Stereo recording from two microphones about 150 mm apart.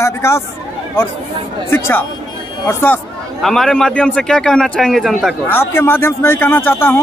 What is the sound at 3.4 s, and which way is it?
A man's voice, 5° left (ahead or behind).